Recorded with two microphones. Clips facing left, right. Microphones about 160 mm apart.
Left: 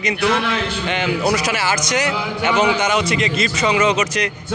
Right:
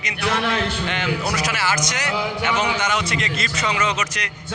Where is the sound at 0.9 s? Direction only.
10° left (ahead or behind).